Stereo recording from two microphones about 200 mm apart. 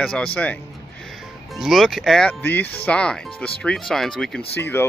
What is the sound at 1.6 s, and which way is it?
Speech, centre (ahead or behind).